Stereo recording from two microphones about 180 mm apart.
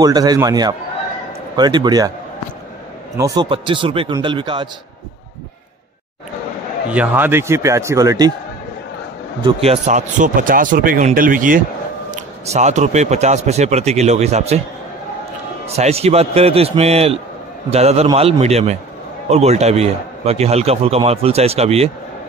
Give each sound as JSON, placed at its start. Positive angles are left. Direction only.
{"t": 0.0, "sound": "speech", "side_deg": -20}
{"t": 3.2, "sound": "speech", "side_deg": -20}
{"t": 6.9, "sound": "a man's voice", "side_deg": -10}
{"t": 9.4, "sound": "a man's voice", "side_deg": -30}
{"t": 15.6, "sound": "a man's voice", "side_deg": -35}